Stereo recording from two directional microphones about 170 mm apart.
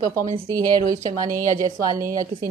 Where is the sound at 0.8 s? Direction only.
50° right (ahead or behind).